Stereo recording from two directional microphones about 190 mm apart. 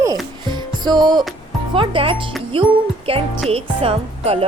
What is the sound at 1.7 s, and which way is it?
Speech, 25° right (ahead or behind).